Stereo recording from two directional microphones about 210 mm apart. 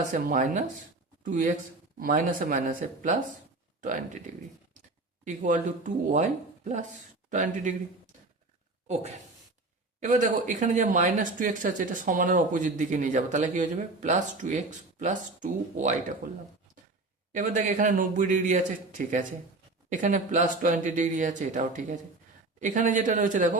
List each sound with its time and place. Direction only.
0.1 s speech: 35° right (ahead or behind)
5.2 s speech: 35° right (ahead or behind)
7.3 s speech: 35° right (ahead or behind)
10.0 s speech: 40° right (ahead or behind)
17.3 s speech: 40° right (ahead or behind)